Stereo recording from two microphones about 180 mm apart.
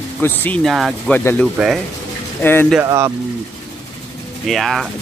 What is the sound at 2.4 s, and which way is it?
Speech, 10° left (ahead or behind).